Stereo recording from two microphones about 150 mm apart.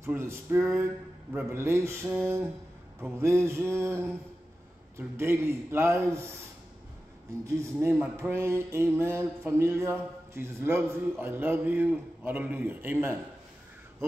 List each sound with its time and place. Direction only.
0.0 s a man's voice: 15° right (ahead or behind)
3.0 s a man's voice: 20° right (ahead or behind)
7.4 s a man's voice: 20° right (ahead or behind)